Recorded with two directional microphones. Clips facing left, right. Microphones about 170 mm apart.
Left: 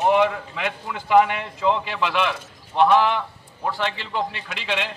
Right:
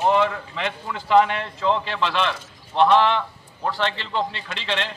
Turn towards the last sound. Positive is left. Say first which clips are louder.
# even
turn(degrees=10)  # may be behind; listen again after turning